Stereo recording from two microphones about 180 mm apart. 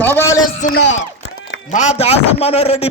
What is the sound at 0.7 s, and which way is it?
Speech, 75° left (ahead or behind).